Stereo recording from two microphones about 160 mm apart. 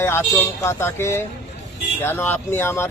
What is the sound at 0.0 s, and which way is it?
Speech, 15° left (ahead or behind).